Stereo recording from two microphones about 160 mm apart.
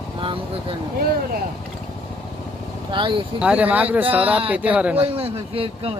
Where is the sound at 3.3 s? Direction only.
10° right (ahead or behind).